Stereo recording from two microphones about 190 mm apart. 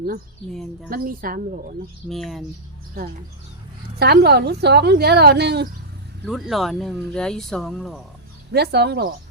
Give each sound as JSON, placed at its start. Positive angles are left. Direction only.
{"t": 0.9, "sound": "a woman's voice", "side_deg": -50}
{"t": 2.0, "sound": "speech", "side_deg": 0}
{"t": 3.9, "sound": "a woman's voice", "side_deg": -60}
{"t": 6.2, "sound": "speech", "side_deg": 0}
{"t": 8.5, "sound": "a woman's voice", "side_deg": -60}